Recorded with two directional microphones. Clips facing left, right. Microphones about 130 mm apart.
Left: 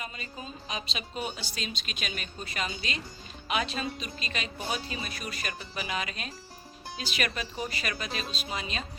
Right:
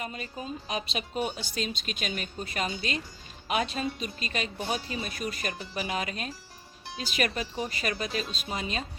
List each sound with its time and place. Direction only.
0.0 s speech: 50° right (ahead or behind)